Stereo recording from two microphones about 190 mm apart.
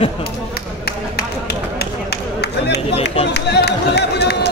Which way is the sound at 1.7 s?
60° left (ahead or behind).